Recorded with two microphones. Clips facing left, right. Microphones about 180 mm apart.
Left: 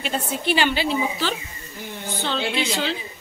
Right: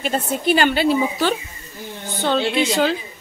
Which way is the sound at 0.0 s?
45° right (ahead or behind).